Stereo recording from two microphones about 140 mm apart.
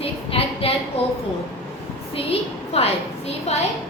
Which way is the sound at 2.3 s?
45° left (ahead or behind).